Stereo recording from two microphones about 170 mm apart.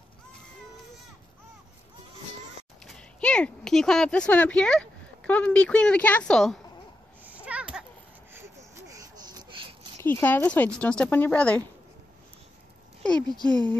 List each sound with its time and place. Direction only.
2.8 s speech: 5° left (ahead or behind)
7.2 s a sound: 10° right (ahead or behind); by 9.7 s 25° right (ahead or behind)
9.9 s a woman's voice: 15° left (ahead or behind)
13.0 s speech: 5° left (ahead or behind)